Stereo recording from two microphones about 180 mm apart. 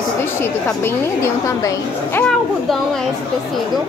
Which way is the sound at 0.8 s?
15° left (ahead or behind).